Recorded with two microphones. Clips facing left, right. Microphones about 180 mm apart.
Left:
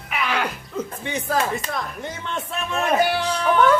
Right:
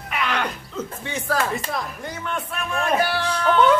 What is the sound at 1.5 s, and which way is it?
Speech, centre (ahead or behind).